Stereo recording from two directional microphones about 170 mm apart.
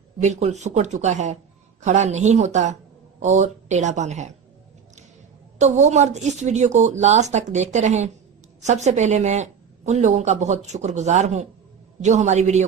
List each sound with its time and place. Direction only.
0.2 s a woman's voice: 40° right (ahead or behind)
5.5 s a woman's voice: 45° right (ahead or behind)